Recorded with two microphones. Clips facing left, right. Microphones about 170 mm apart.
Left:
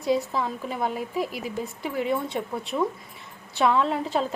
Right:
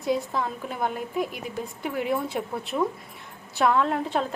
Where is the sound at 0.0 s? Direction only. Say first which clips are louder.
Left 1 dB; centre (ahead or behind).